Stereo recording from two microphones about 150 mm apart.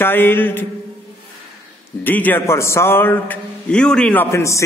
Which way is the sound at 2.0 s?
10° left (ahead or behind).